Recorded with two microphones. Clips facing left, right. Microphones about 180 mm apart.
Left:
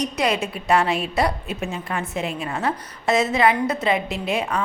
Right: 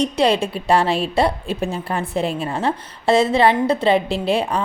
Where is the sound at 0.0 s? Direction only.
30° right (ahead or behind).